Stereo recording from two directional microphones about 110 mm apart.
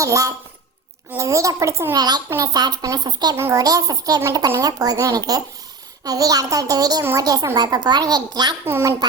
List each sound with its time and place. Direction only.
0.0 s a child's voice: 30° right (ahead or behind)
8.6 s a child's voice: 25° right (ahead or behind)